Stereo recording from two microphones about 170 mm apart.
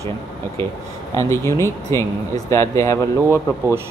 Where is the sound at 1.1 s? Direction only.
15° left (ahead or behind).